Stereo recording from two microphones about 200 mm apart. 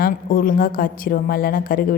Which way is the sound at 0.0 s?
45° left (ahead or behind).